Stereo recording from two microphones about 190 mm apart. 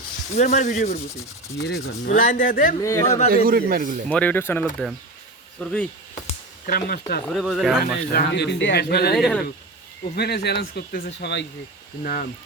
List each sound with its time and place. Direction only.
0.3 s speech: 40° left (ahead or behind)
1.6 s speech: 60° left (ahead or behind)
2.8 s speech: 15° left (ahead or behind)
3.2 s a man's voice: 50° right (ahead or behind)
4.1 s speech: 10° left (ahead or behind)
6.7 s speech: 50° left (ahead or behind)
7.3 s speech: centre (ahead or behind)
8.1 s speech: 60° left (ahead or behind)
9.1 s speech: centre (ahead or behind)
10.2 s speech: 60° left (ahead or behind)